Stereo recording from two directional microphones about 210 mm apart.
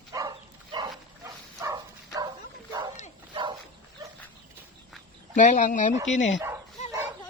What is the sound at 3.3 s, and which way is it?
Dog, 20° right (ahead or behind).